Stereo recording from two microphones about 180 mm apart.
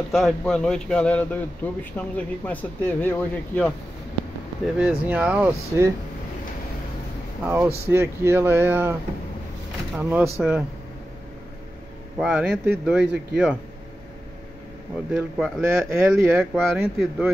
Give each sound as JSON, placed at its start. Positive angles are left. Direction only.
{"t": 0.1, "sound": "speech", "side_deg": 5}
{"t": 4.7, "sound": "speech", "side_deg": -5}
{"t": 7.4, "sound": "speech", "side_deg": -10}
{"t": 9.9, "sound": "speech", "side_deg": -5}
{"t": 12.2, "sound": "speech", "side_deg": -10}
{"t": 13.0, "sound": "speech", "side_deg": -70}
{"t": 15.0, "sound": "speech", "side_deg": -5}